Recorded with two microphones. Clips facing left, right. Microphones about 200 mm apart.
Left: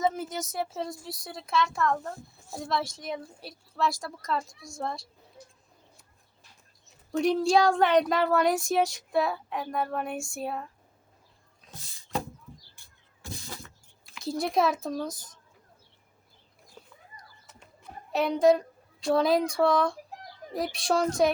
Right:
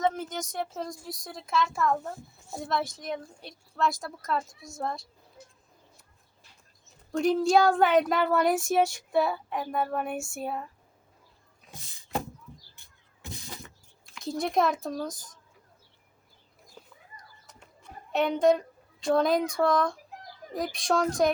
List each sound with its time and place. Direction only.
0.0 s a woman's voice: 5° left (ahead or behind)
7.1 s a woman's voice: centre (ahead or behind)
12.7 s a sound: 20° right (ahead or behind)
14.2 s a woman's voice: centre (ahead or behind)
16.8 s a sound: centre (ahead or behind)
18.1 s a child's voice: centre (ahead or behind)